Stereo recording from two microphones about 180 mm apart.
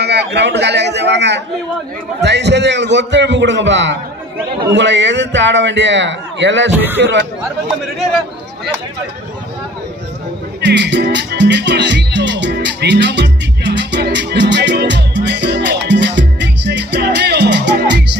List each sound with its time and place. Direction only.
0.0 s a man's voice: 65° right (ahead or behind)
10.6 s music: 75° right (ahead or behind)